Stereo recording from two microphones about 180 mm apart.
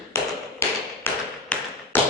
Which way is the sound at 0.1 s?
15° left (ahead or behind).